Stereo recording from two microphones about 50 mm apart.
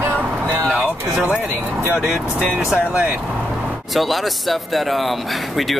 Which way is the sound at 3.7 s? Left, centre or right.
Centre.